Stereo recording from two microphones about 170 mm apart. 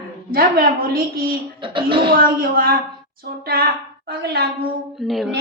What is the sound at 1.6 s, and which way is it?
Speech, 30° right (ahead or behind).